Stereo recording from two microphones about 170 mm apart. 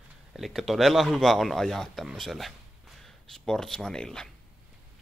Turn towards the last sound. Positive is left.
turn(degrees=5)  # may be behind; listen again after turning